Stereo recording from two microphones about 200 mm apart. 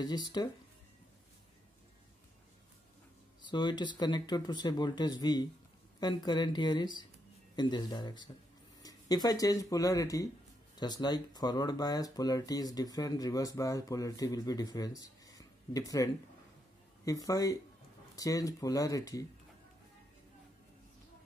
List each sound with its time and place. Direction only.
0.0 s speech: 20° left (ahead or behind)
3.4 s speech: 20° left (ahead or behind)